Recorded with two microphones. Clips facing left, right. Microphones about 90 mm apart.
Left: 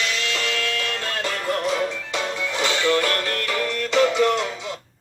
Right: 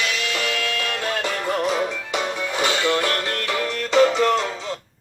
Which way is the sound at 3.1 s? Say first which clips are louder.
Even; 30° right (ahead or behind).